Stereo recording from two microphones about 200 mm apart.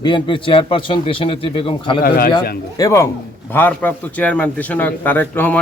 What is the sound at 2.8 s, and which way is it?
A man's voice, 15° left (ahead or behind).